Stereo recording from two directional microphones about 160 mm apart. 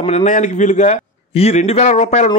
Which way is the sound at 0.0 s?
45° left (ahead or behind).